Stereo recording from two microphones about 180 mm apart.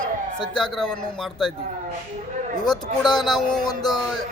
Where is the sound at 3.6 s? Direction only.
25° left (ahead or behind).